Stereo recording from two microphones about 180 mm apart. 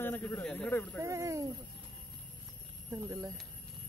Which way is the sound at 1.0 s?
15° right (ahead or behind).